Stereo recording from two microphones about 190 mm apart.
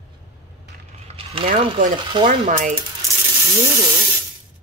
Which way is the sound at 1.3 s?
30° right (ahead or behind).